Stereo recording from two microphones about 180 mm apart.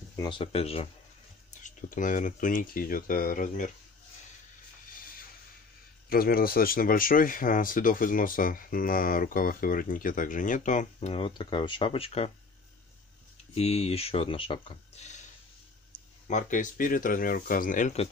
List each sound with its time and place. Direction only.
0.1 s speech: 25° left (ahead or behind)
1.5 s speech: 45° left (ahead or behind)
6.0 s speech: 55° left (ahead or behind); by 12.3 s 35° left (ahead or behind)
13.6 s speech: 35° left (ahead or behind)
16.3 s speech: 45° left (ahead or behind)